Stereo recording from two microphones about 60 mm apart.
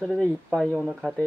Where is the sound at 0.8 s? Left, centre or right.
Centre.